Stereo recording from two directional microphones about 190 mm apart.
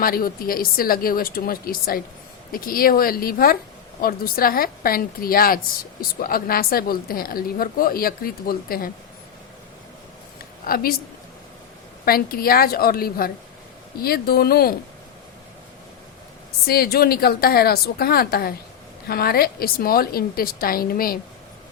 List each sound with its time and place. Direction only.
0.0 s a woman's voice: 50° left (ahead or behind)
10.7 s a woman's voice: 55° left (ahead or behind)
12.0 s a woman's voice: 50° left (ahead or behind)
16.6 s a woman's voice: 55° left (ahead or behind)